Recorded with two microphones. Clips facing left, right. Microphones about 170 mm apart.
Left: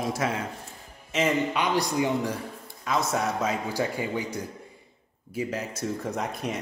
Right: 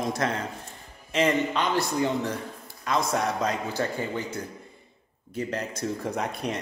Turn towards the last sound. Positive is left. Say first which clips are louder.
# right 1 dB
turn(degrees=0)  # may be behind; listen again after turning